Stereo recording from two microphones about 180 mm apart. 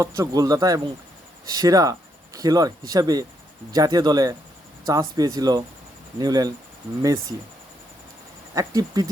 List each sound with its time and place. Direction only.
0.0 s speech: 20° right (ahead or behind)
8.5 s speech: 20° right (ahead or behind)